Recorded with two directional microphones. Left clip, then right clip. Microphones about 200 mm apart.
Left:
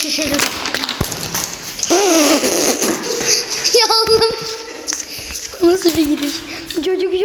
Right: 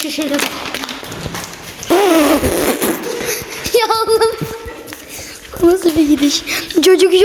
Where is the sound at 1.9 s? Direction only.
20° right (ahead or behind).